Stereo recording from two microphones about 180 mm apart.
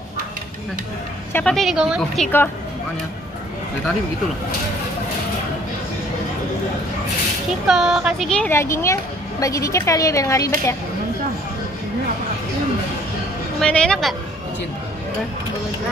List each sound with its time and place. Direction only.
1.3 s a woman's voice: 5° left (ahead or behind)
7.6 s speech: 5° right (ahead or behind); by 10.8 s 15° left (ahead or behind)
13.6 s a woman's voice: 5° left (ahead or behind)